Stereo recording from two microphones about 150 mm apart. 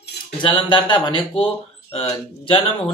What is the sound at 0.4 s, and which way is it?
Speech, 35° left (ahead or behind).